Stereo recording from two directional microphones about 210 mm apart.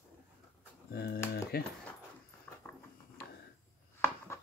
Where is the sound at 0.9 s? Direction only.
50° left (ahead or behind).